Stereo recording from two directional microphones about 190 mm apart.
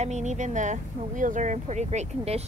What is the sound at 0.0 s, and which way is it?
Speech, 40° right (ahead or behind).